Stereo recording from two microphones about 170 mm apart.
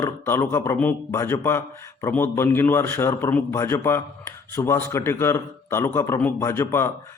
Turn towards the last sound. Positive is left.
turn(degrees=15)  # may be behind; listen again after turning